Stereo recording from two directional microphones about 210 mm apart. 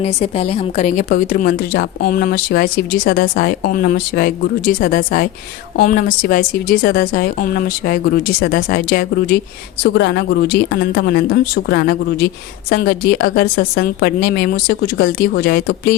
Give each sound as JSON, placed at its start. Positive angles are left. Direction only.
{"t": 0.0, "sound": "speech", "side_deg": 30}